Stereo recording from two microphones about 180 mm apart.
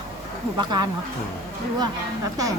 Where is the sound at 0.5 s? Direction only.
25° right (ahead or behind).